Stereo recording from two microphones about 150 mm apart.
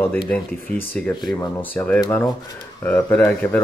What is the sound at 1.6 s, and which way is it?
Speech, 10° left (ahead or behind).